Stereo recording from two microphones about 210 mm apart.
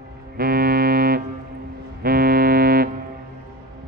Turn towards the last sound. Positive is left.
turn(degrees=-45)  # may be behind; listen again after turning